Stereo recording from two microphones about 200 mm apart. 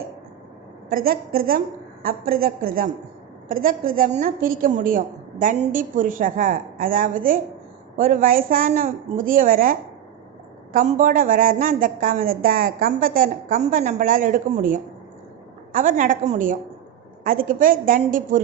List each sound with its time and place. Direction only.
0.9 s a woman's voice: 45° right (ahead or behind)